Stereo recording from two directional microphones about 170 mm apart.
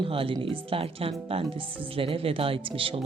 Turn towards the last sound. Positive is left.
turn(degrees=-30)  # may be behind; listen again after turning